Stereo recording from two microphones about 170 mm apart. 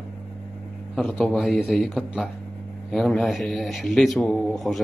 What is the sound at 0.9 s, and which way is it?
Speech, centre (ahead or behind).